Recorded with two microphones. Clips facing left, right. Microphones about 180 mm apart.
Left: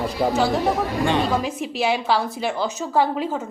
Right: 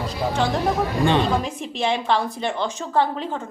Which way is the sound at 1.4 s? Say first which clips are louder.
Left 2 dB; 5° left (ahead or behind).